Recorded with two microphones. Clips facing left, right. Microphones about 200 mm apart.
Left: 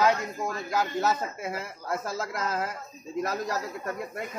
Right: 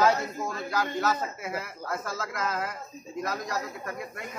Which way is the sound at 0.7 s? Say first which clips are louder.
Left 1 dB; 20° left (ahead or behind).